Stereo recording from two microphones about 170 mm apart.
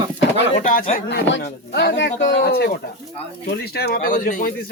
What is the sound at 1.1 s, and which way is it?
Speech, 85° left.